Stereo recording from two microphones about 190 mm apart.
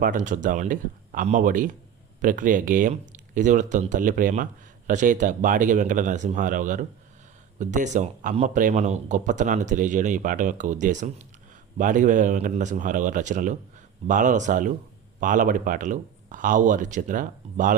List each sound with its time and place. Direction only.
0.0 s a man's voice: 45° right (ahead or behind)